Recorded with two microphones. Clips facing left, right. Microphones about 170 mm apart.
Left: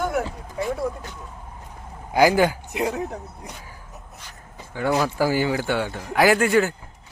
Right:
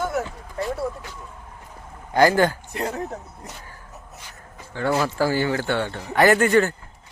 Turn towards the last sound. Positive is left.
turn(degrees=0)  # may be behind; listen again after turning